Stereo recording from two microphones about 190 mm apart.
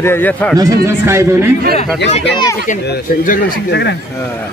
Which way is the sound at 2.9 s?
45° left (ahead or behind).